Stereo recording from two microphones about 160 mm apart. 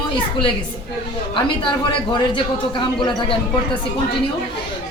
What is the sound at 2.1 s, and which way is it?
A woman's voice, 30° left (ahead or behind).